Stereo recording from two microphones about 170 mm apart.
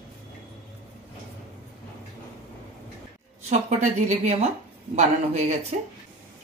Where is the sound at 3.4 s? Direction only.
40° right (ahead or behind).